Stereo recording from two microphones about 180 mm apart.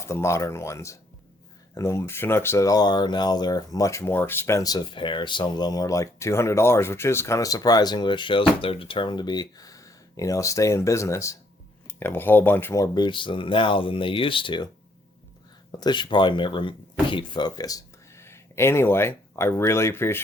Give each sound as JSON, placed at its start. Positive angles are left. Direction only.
{"t": 0.0, "sound": "speech", "side_deg": 15}
{"t": 15.8, "sound": "speech", "side_deg": 25}